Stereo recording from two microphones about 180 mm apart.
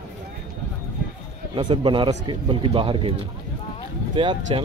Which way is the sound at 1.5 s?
25° right (ahead or behind).